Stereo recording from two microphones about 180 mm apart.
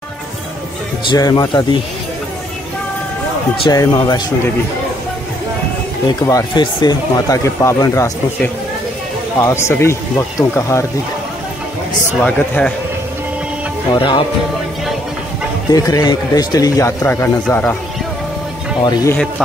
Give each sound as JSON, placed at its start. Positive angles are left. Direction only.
{"t": 1.1, "sound": "speech", "side_deg": 20}
{"t": 3.6, "sound": "speech", "side_deg": 20}
{"t": 6.0, "sound": "speech", "side_deg": 20}
{"t": 12.2, "sound": "speech", "side_deg": 5}
{"t": 13.9, "sound": "speech", "side_deg": 30}
{"t": 15.7, "sound": "speech", "side_deg": 20}